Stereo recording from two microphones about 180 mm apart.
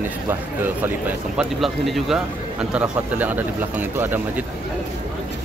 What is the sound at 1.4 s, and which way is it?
Speech, centre (ahead or behind).